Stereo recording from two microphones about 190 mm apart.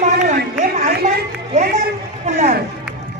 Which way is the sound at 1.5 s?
35° right (ahead or behind).